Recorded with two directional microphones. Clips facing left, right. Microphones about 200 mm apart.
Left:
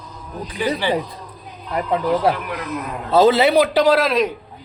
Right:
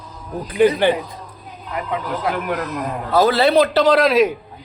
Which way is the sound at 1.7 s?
35° left (ahead or behind).